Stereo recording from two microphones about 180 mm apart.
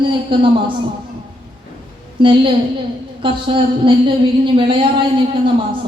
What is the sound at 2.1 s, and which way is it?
A woman's voice, 30° right (ahead or behind).